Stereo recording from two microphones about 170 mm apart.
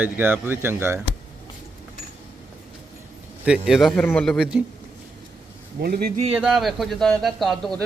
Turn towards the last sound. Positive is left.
turn(degrees=5)  # may be behind; listen again after turning